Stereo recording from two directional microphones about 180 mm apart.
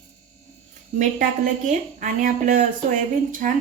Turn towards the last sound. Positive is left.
turn(degrees=-50)  # may be behind; listen again after turning